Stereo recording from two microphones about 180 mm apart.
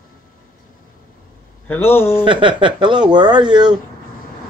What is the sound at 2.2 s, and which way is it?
Speech, 25° right (ahead or behind).